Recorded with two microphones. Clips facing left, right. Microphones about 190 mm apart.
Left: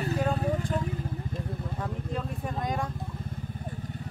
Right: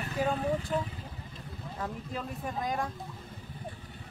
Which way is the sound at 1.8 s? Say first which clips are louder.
Left 1 dB; centre (ahead or behind).